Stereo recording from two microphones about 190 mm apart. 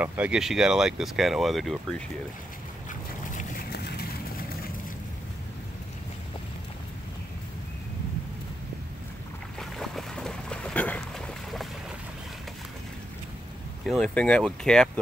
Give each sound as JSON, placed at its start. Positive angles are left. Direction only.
{"t": 0.0, "sound": "speech", "side_deg": -10}
{"t": 2.9, "sound": "duck", "side_deg": 45}
{"t": 9.6, "sound": "boat", "side_deg": 0}
{"t": 13.8, "sound": "speech", "side_deg": 5}